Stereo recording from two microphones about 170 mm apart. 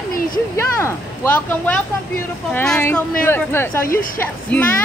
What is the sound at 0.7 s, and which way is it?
A woman's voice, 15° left (ahead or behind).